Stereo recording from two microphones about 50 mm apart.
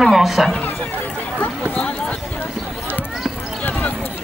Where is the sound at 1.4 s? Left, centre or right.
Left.